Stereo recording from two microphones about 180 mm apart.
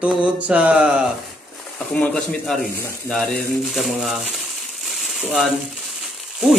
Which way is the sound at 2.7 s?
15° left (ahead or behind).